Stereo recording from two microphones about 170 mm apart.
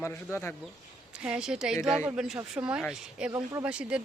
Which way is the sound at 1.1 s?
5° right (ahead or behind).